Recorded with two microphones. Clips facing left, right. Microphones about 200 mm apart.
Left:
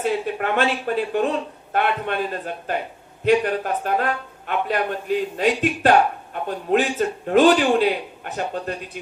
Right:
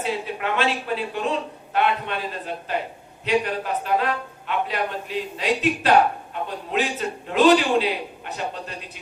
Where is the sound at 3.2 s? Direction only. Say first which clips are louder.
Left 4 dB; 50° left (ahead or behind).